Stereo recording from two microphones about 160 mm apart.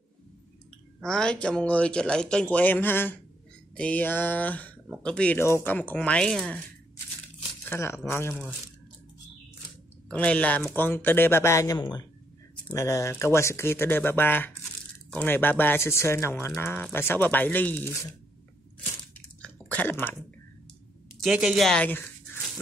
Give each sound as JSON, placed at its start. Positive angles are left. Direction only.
{"t": 1.0, "sound": "speech", "side_deg": 5}
{"t": 7.6, "sound": "speech", "side_deg": 15}
{"t": 10.1, "sound": "speech", "side_deg": 10}
{"t": 19.4, "sound": "chewing", "side_deg": 10}
{"t": 21.2, "sound": "speech", "side_deg": -5}